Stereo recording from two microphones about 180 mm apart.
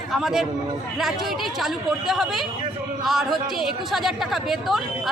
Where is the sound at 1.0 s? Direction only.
Centre (ahead or behind).